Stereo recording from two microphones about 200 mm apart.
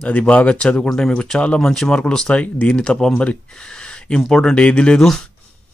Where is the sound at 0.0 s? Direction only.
5° left (ahead or behind).